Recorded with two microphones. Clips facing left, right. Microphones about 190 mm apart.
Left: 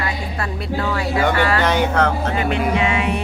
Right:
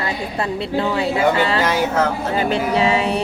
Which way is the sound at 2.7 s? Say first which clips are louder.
Right 2 dB; 35° right (ahead or behind).